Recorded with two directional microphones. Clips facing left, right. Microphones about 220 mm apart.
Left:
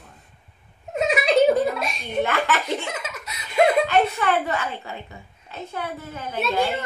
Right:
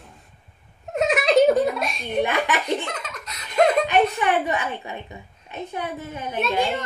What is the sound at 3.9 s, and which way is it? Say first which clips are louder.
A woman's voice: right 1 dB; 15° right (ahead or behind).